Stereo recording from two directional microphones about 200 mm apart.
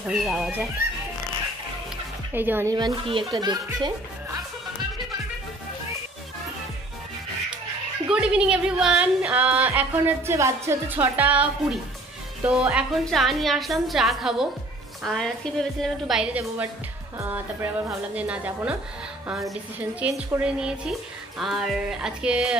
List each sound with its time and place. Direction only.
0.0 s a woman's voice: centre (ahead or behind)
2.3 s speech: 10° right (ahead or behind)
8.1 s a woman's voice: 5° right (ahead or behind)